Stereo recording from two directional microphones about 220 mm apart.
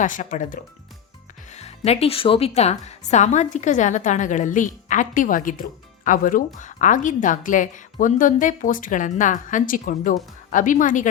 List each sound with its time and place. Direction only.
0.0 s speech: 35° left (ahead or behind)